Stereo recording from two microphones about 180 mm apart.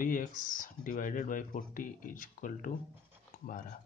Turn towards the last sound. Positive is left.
turn(degrees=50)  # may be behind; listen again after turning